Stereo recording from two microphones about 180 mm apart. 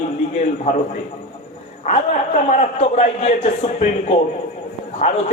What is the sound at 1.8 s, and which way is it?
A man's voice, 40° left (ahead or behind).